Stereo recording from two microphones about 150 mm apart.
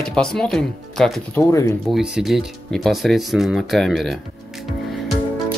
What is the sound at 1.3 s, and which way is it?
Speech, 20° left (ahead or behind).